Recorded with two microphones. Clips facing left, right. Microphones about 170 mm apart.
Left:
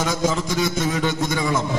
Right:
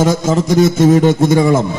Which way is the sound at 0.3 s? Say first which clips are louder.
Right 11 dB; 45° right (ahead or behind).